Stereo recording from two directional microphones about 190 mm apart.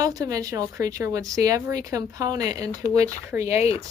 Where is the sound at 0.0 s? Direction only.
20° right (ahead or behind).